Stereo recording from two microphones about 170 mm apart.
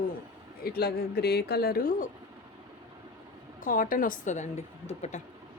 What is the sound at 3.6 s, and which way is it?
Speech, 55° left (ahead or behind).